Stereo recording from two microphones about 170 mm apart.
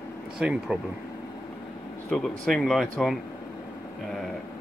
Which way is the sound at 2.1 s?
5° left (ahead or behind).